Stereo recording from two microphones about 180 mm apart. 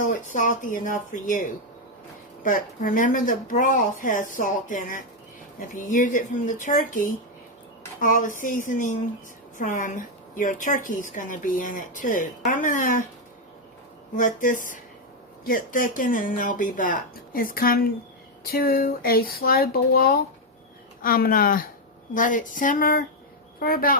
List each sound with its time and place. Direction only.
0.0 s a woman's voice: 45° left (ahead or behind)
14.2 s a woman's voice: 45° left (ahead or behind)